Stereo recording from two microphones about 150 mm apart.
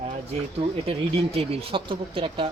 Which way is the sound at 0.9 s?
40° right (ahead or behind).